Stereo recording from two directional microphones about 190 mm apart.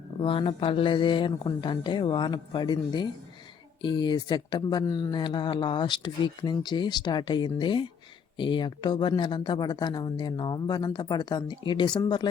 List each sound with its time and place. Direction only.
0.2 s speech: 25° left (ahead or behind)